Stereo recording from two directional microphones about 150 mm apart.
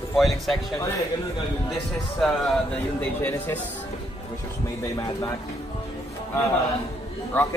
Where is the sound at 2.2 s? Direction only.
5° left (ahead or behind).